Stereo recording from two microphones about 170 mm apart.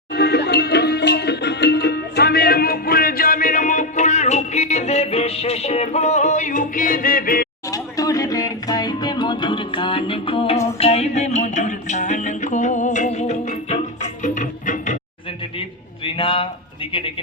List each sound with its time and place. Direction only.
0.1 s music: 75° left (ahead or behind); by 7.4 s 55° left (ahead or behind)
7.7 s music: 20° left (ahead or behind); by 14.9 s 50° left (ahead or behind)
16.0 s speech: 30° left (ahead or behind)